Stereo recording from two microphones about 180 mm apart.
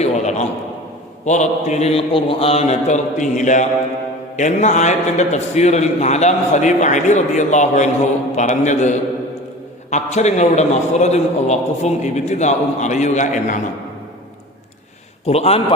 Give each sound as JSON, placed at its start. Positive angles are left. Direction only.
{"t": 0.0, "sound": "a sound", "side_deg": 40}
{"t": 1.2, "sound": "a man's voice", "side_deg": 40}
{"t": 15.3, "sound": "a man's voice", "side_deg": 35}